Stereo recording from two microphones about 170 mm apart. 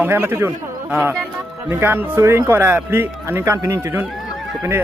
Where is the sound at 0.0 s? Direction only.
15° right (ahead or behind).